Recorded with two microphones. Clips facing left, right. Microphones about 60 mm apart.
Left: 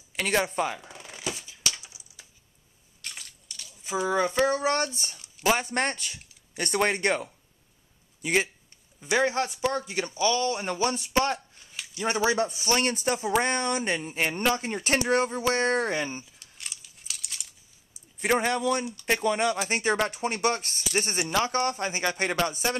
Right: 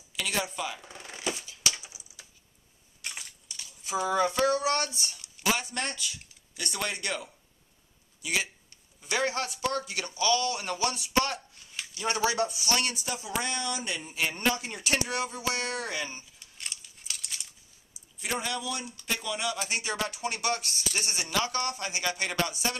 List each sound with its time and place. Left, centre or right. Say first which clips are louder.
0.1 s speech: left 6 dB; left
0.9 s shuffling cards: right 1 dB; centre
1.6 s a sound: even; centre
3.8 s speech: left 1 dB; centre; by 8.5 s left
9.0 s speech: left 5 dB; left
16.5 s crumpling: right 1 dB; centre
18.2 s speech: left 8 dB; left